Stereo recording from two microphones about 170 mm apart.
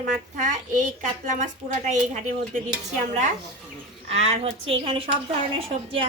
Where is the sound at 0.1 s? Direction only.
50° right (ahead or behind).